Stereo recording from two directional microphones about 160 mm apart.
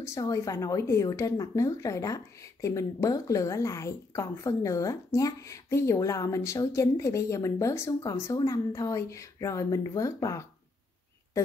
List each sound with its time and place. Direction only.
0.0 s speech: 20° left (ahead or behind)